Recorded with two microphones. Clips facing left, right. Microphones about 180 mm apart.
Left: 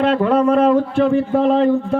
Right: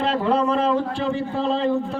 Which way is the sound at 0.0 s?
60° left (ahead or behind).